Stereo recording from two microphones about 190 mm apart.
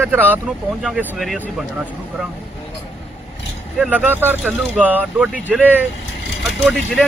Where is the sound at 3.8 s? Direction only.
5° right (ahead or behind).